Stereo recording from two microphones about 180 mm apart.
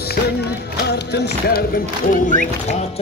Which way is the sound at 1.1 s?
60° left (ahead or behind).